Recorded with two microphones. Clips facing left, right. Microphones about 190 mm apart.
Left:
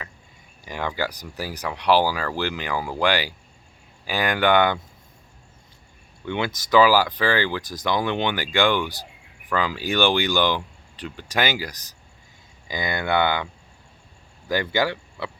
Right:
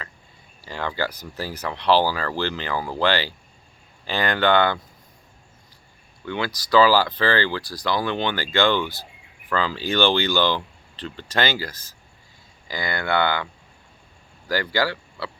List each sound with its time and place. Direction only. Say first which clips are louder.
0.6 s speech: even; 15° left (ahead or behind)
6.2 s speech: left 1 dB; 20° left (ahead or behind)